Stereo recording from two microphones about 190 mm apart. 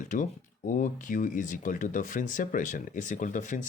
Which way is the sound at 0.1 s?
45° left (ahead or behind).